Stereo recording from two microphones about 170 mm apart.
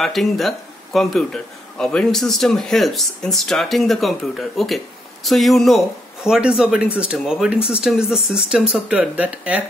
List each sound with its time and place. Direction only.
0.0 s speech: centre (ahead or behind)